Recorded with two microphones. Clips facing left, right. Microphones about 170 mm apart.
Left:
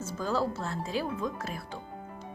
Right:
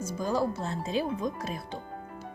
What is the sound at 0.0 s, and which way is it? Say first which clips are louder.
Speech: right 2 dB; 15° right (ahead or behind).